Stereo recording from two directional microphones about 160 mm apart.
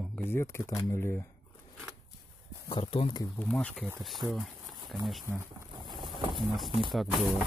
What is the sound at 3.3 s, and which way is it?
Speech, 5° left (ahead or behind).